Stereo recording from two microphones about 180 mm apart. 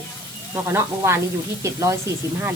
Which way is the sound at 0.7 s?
15° right (ahead or behind).